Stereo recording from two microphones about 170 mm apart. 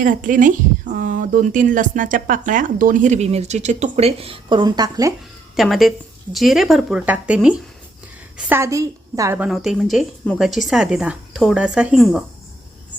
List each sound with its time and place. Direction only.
0.0 s a woman's voice: 50° right (ahead or behind); by 5.1 s 20° right (ahead or behind)
5.5 s a woman's voice: centre (ahead or behind); by 9.4 s 20° right (ahead or behind)
9.4 s speech: centre (ahead or behind)